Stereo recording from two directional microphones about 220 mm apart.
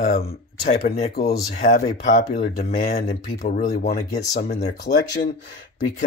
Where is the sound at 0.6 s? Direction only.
35° left (ahead or behind).